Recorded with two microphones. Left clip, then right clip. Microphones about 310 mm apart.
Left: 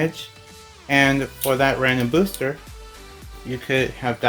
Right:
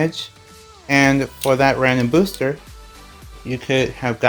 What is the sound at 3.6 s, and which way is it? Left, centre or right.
Speech, centre.